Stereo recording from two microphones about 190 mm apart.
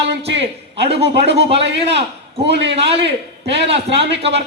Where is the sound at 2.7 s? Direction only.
30° right (ahead or behind).